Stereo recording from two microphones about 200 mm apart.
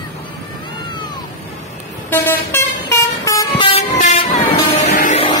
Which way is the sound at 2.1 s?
10° left (ahead or behind).